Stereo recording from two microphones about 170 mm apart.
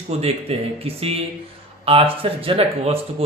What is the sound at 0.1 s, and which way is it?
Speech, 35° right (ahead or behind).